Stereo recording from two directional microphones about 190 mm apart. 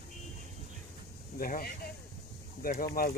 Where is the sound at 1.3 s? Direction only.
50° left (ahead or behind).